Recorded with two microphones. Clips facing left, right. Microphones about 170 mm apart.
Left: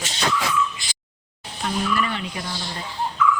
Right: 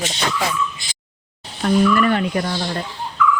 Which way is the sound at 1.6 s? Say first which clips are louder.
Right 8 dB; 55° right (ahead or behind).